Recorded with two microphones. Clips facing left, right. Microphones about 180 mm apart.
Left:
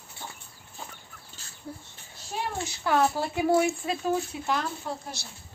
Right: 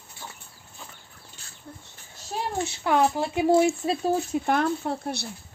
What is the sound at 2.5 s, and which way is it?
Speech, 20° right (ahead or behind).